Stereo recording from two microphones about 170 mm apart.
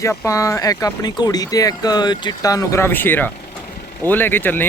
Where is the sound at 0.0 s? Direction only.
15° left (ahead or behind).